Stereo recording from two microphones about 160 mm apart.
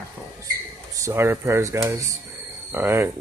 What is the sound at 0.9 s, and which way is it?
Speech, 15° right (ahead or behind).